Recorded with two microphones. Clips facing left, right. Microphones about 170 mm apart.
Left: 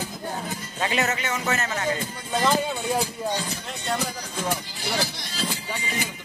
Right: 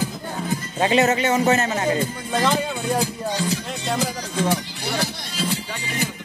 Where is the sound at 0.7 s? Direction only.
25° right (ahead or behind).